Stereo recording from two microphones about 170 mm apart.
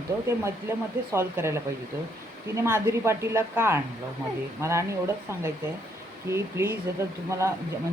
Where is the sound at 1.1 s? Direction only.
15° right (ahead or behind).